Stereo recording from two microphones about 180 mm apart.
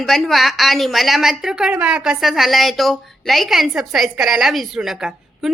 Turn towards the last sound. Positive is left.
turn(degrees=0)  # may be behind; listen again after turning